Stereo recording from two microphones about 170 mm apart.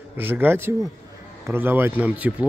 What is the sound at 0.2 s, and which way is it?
Speech, 10° right (ahead or behind).